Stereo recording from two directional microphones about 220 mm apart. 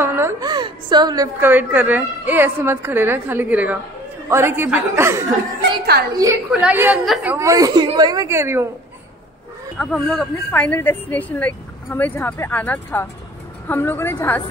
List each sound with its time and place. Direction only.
0.0 s a woman's voice: 10° right (ahead or behind)
5.9 s a woman's voice: 45° right (ahead or behind)
6.6 s a woman's voice: 10° right (ahead or behind)
9.8 s speech: 5° left (ahead or behind)